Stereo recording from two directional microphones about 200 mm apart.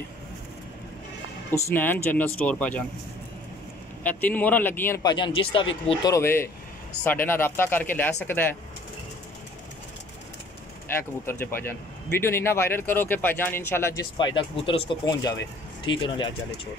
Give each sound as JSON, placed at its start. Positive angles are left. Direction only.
{"t": 1.5, "sound": "speech", "side_deg": 10}
{"t": 4.0, "sound": "speech", "side_deg": 5}
{"t": 5.0, "sound": "speech", "side_deg": 25}
{"t": 6.1, "sound": "speech", "side_deg": 10}
{"t": 11.2, "sound": "speech", "side_deg": 10}
{"t": 14.1, "sound": "speech", "side_deg": 25}